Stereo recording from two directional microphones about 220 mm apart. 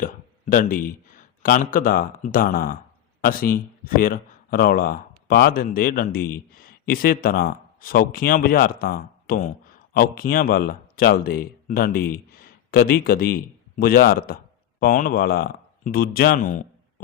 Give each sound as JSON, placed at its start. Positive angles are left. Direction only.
{"t": 0.0, "sound": "a man's voice", "side_deg": 40}